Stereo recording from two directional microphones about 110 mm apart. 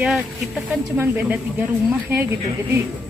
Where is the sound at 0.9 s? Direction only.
15° right (ahead or behind).